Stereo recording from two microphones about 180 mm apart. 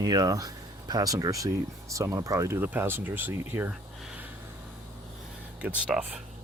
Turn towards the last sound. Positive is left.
turn(degrees=-5)  # may be behind; listen again after turning